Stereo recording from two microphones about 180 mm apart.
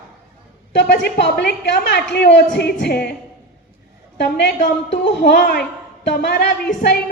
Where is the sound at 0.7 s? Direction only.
75° left (ahead or behind).